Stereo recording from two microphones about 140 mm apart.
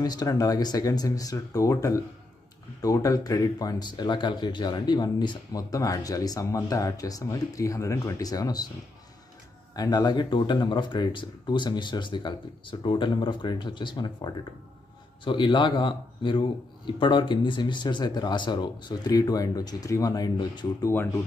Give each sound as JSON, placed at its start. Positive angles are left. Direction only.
{"t": 0.0, "sound": "speech", "side_deg": 30}
{"t": 9.8, "sound": "a man's voice", "side_deg": 30}